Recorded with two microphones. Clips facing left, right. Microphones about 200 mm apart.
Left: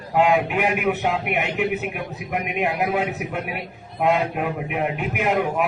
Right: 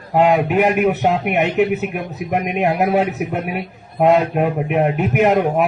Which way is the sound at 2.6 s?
60° right (ahead or behind).